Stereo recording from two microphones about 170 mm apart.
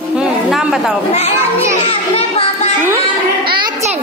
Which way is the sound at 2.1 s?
35° left (ahead or behind).